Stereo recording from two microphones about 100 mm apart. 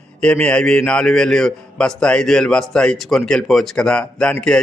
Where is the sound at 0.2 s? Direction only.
10° left (ahead or behind).